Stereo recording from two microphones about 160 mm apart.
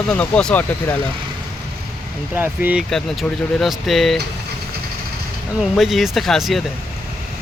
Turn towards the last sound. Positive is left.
turn(degrees=0)  # may be behind; listen again after turning